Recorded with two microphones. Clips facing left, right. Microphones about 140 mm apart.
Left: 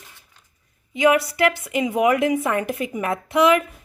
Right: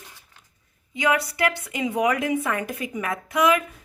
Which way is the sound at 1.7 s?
20° left (ahead or behind).